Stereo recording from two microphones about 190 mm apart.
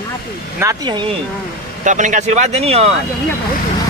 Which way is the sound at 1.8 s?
40° right (ahead or behind).